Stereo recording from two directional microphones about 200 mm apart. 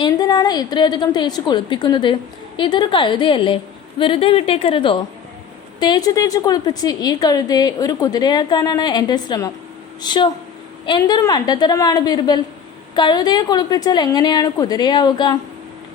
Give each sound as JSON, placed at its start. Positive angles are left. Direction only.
{"t": 0.0, "sound": "a woman's voice", "side_deg": 20}